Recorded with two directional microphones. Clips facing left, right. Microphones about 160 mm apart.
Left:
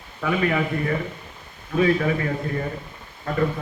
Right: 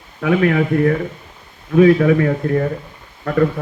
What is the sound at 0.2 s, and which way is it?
A man's voice, 65° right (ahead or behind).